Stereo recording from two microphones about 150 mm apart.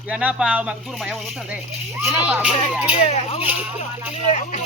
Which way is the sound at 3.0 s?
45° left (ahead or behind).